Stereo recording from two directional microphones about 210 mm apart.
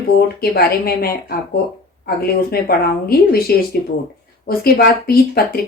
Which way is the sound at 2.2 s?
45° left (ahead or behind).